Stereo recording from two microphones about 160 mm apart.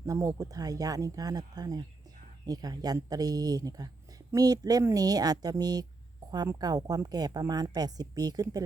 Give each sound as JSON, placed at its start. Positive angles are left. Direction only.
{"t": 0.0, "sound": "a woman's voice", "side_deg": -20}